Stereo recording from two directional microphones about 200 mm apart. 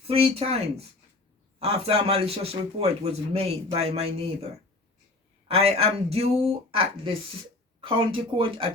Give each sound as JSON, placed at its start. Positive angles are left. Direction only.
{"t": 0.1, "sound": "a man's voice", "side_deg": -30}
{"t": 5.5, "sound": "speech", "side_deg": -30}